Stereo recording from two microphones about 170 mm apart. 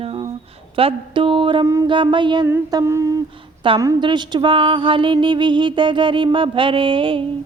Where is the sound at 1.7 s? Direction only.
25° right (ahead or behind).